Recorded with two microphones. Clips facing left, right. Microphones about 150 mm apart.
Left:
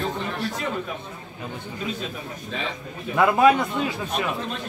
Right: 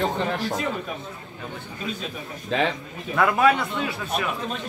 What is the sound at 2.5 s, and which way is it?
Speech, 90° right.